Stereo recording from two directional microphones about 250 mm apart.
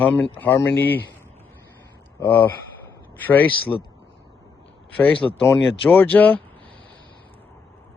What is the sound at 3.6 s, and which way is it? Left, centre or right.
Speech, left.